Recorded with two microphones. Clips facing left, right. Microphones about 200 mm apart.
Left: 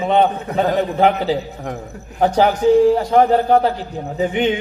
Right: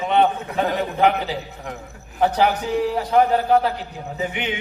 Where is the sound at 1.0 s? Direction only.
35° left (ahead or behind).